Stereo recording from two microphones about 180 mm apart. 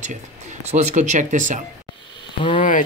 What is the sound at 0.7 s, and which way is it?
Speech, 40° right (ahead or behind).